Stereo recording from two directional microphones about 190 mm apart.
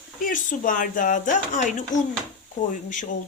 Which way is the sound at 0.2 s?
45° left (ahead or behind).